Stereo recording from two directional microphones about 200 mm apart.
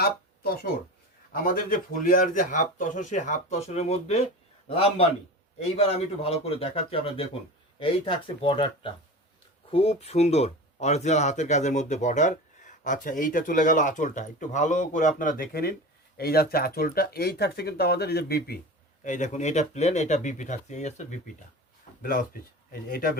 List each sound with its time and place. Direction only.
0.0 s speech: 50° left (ahead or behind)
19.0 s speech: 35° left (ahead or behind)